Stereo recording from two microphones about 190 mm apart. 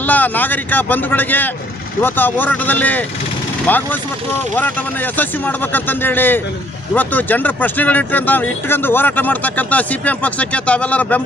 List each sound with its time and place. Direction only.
0.0 s speech: 10° left (ahead or behind)